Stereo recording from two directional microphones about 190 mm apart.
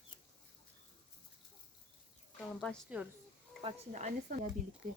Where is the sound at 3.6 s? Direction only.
35° right (ahead or behind).